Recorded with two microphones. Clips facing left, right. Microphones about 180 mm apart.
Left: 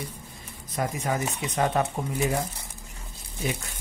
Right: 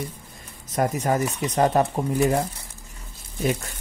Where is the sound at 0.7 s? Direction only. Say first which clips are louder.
Right 6 dB; 45° right (ahead or behind).